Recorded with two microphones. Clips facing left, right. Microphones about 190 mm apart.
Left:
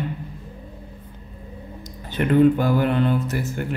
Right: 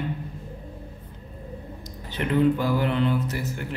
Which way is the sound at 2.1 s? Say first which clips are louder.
Left 5 dB; 50° left (ahead or behind).